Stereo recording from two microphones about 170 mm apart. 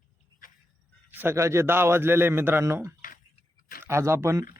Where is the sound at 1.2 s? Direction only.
15° right (ahead or behind).